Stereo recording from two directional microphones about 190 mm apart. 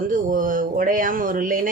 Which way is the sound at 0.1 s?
45° right (ahead or behind).